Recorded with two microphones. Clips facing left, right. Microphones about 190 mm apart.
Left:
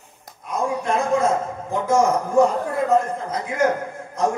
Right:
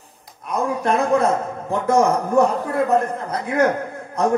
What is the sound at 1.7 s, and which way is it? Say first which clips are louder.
Speech: right 1 dB; 65° right (ahead or behind).